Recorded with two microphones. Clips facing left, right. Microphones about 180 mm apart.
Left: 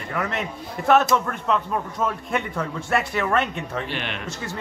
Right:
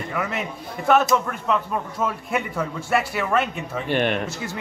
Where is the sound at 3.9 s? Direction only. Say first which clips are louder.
Right 9 dB; 50° right (ahead or behind).